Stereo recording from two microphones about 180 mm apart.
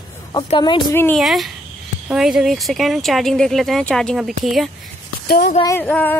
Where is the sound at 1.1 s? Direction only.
Centre (ahead or behind).